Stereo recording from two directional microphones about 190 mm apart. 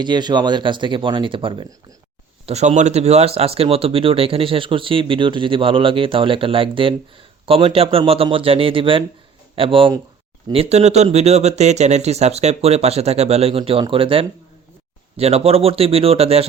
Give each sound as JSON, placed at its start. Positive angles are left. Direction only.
{"t": 0.0, "sound": "speech", "side_deg": -25}
{"t": 2.5, "sound": "speech", "side_deg": -35}